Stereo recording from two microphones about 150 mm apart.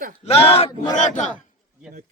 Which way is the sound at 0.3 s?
40° left (ahead or behind).